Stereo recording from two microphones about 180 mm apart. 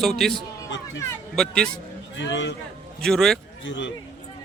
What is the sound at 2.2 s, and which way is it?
Speech, 85° left.